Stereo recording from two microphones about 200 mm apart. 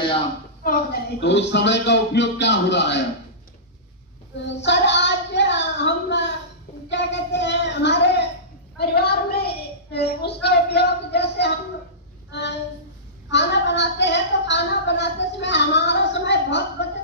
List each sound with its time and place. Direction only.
0.7 s a woman's voice: 55° left (ahead or behind)
4.6 s child singing: 60° left (ahead or behind)
8.7 s a woman's voice: 55° left (ahead or behind)